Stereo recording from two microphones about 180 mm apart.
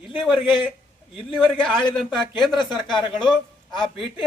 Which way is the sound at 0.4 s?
30° left (ahead or behind).